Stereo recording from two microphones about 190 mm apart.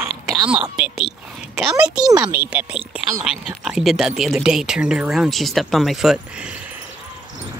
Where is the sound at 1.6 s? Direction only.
5° right (ahead or behind).